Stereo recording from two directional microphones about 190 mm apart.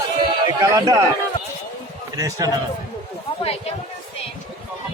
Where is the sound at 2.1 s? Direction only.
20° right (ahead or behind).